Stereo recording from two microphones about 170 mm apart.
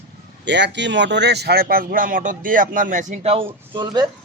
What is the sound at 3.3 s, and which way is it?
Speech, 30° right (ahead or behind).